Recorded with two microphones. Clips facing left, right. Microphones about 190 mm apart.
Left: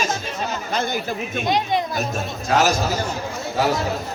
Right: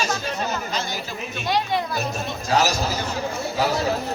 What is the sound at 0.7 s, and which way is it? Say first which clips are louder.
Speech: left 5 dB; 55° left (ahead or behind).